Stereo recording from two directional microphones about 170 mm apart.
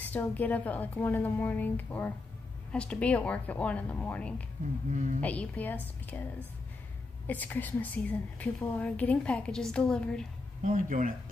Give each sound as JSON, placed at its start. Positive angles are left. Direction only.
{"t": 0.0, "sound": "a woman's voice", "side_deg": 10}
{"t": 4.9, "sound": "speech", "side_deg": -50}
{"t": 5.2, "sound": "a woman's voice", "side_deg": 10}
{"t": 10.6, "sound": "speech", "side_deg": -50}